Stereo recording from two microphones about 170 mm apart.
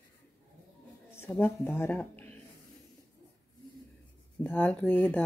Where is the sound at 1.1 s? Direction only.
15° left (ahead or behind).